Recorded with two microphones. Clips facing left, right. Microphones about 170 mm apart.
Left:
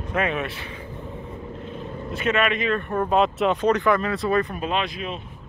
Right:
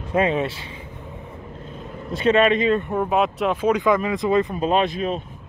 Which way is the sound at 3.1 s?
Centre (ahead or behind).